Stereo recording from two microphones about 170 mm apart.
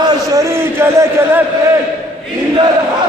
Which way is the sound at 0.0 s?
20° right (ahead or behind).